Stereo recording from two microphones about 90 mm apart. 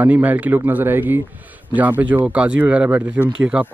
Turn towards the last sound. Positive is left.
turn(degrees=-15)  # may be behind; listen again after turning